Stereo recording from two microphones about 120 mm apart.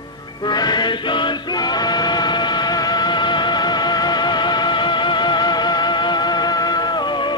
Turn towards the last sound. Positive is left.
turn(degrees=40)  # may be behind; listen again after turning